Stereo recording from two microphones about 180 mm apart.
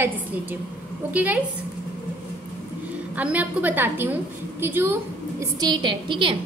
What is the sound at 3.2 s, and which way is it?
A woman's voice, 10° right (ahead or behind).